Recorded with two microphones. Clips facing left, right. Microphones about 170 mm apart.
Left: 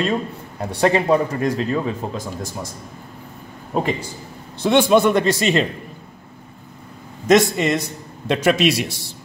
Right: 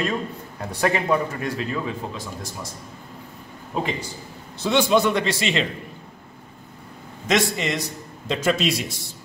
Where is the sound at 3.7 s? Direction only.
50° left (ahead or behind).